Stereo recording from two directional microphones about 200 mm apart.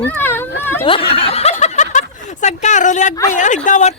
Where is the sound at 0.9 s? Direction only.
25° left (ahead or behind).